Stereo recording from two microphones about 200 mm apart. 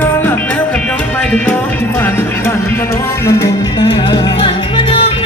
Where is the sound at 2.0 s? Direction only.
10° left (ahead or behind).